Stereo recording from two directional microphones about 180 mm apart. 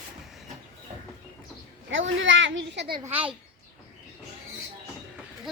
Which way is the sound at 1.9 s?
90° right.